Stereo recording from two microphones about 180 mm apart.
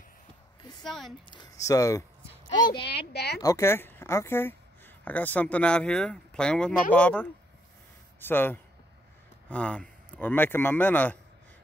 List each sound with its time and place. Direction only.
0.8 s speech: centre (ahead or behind)
1.3 s speech: 20° left (ahead or behind)
2.8 s speech: 65° left (ahead or behind)
3.3 s a woman's voice: 15° left (ahead or behind)